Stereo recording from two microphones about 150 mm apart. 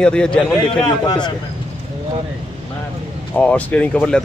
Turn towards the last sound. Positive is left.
turn(degrees=10)  # may be behind; listen again after turning